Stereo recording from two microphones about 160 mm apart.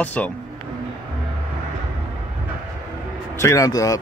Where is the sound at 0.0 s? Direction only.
10° left (ahead or behind).